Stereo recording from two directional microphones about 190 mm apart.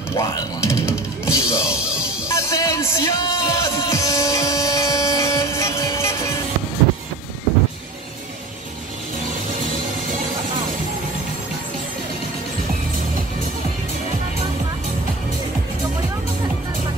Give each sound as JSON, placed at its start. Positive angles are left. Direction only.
{"t": 0.1, "sound": "speech", "side_deg": 15}
{"t": 1.8, "sound": "music", "side_deg": -5}
{"t": 2.2, "sound": "music", "side_deg": 15}